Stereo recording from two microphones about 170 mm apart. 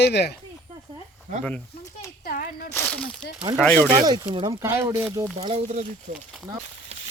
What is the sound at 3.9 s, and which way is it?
Speech, 25° right (ahead or behind).